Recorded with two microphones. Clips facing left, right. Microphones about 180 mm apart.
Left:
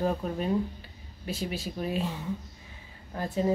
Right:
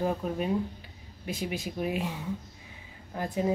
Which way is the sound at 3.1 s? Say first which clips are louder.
Left 1 dB; 15° right (ahead or behind).